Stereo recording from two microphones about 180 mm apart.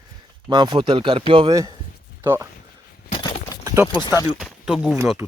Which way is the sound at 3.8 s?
10° right (ahead or behind).